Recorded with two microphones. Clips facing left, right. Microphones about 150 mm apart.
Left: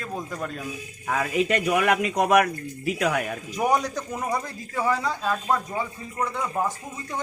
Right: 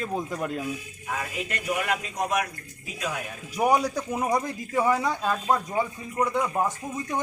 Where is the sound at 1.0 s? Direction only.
85° left; by 2.5 s 70° left (ahead or behind).